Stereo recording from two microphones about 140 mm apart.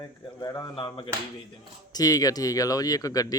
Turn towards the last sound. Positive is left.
turn(degrees=25)  # may be behind; listen again after turning